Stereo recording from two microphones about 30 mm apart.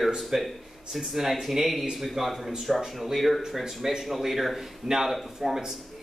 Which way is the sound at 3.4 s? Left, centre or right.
Centre.